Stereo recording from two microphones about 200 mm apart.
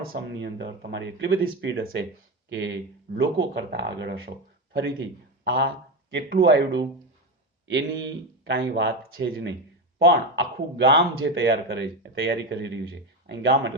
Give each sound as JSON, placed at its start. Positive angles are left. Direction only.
{"t": 0.0, "sound": "speech", "side_deg": -55}